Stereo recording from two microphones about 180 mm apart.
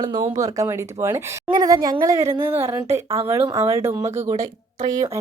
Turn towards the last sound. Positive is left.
turn(degrees=-20)  # may be behind; listen again after turning